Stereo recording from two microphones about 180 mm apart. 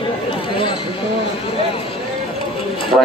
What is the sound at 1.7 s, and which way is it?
Clip-clop, 30° left (ahead or behind).